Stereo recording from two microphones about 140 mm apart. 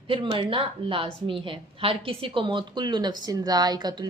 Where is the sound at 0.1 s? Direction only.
40° right (ahead or behind).